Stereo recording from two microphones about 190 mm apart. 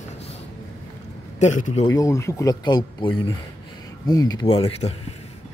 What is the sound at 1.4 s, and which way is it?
Speech, 40° left (ahead or behind).